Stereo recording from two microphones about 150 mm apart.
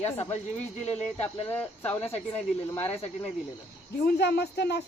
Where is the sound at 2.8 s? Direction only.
40° left (ahead or behind).